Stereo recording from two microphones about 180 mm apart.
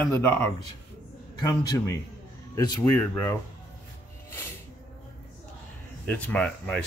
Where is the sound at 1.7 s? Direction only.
20° left (ahead or behind).